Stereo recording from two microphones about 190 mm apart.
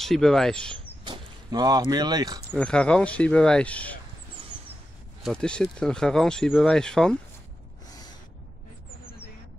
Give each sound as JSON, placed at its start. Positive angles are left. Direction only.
{"t": 0.0, "sound": "speech", "side_deg": 0}
{"t": 1.0, "sound": "speech", "side_deg": -20}
{"t": 2.5, "sound": "speech", "side_deg": 5}
{"t": 5.2, "sound": "speech", "side_deg": 5}
{"t": 7.9, "sound": "gasp", "side_deg": 20}